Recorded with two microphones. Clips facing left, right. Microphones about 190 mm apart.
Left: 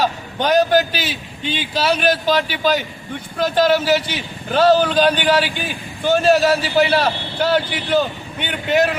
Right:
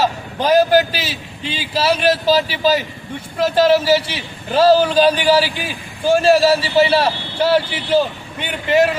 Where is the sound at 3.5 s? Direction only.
30° right (ahead or behind).